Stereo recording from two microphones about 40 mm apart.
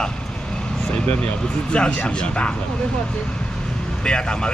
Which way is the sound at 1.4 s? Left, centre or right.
Left.